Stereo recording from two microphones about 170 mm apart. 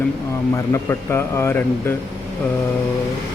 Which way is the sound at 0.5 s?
15° left (ahead or behind).